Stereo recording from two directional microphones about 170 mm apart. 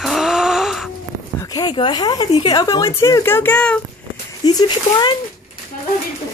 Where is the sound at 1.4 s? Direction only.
25° left (ahead or behind).